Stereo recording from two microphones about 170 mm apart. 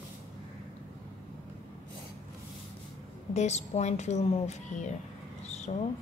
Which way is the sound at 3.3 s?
40° left (ahead or behind).